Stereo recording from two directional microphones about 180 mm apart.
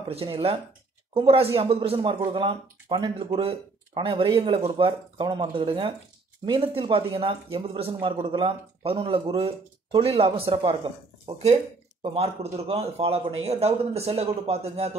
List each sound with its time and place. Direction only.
0.1 s speech: 30° right (ahead or behind)